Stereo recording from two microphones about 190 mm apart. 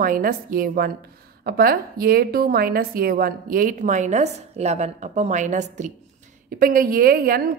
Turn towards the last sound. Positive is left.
turn(degrees=-50)  # may be behind; listen again after turning